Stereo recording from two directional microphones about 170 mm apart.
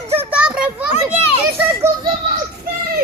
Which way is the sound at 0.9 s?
40° left (ahead or behind).